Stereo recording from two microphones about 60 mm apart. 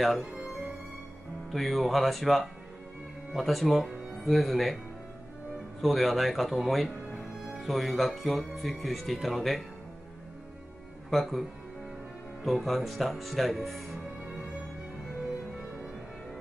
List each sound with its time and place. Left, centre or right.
0.2 s music: centre
1.5 s speech: centre
5.8 s speech: centre
11.1 s speech: centre
12.4 s speech: centre